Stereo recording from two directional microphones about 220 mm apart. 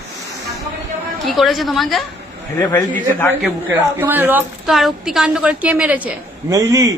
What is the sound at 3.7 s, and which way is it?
A woman's voice, 10° right (ahead or behind).